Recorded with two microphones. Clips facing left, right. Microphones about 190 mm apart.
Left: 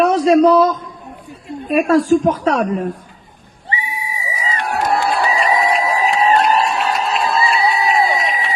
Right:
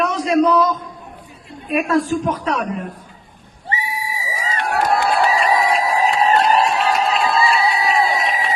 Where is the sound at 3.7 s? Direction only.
80° right.